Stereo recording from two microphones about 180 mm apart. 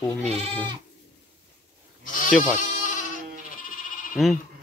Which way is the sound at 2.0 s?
45° left (ahead or behind).